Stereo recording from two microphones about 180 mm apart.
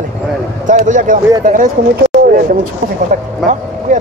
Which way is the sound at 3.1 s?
50° right (ahead or behind).